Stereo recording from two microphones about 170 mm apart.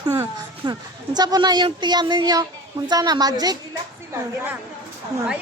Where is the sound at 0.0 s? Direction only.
20° right (ahead or behind).